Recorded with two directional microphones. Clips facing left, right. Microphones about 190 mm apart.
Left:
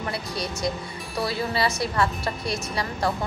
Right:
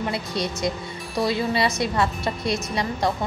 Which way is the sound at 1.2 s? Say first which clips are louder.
Right 3 dB; 20° right (ahead or behind).